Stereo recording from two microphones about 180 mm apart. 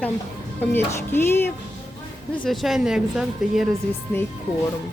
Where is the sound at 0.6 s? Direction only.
10° left (ahead or behind).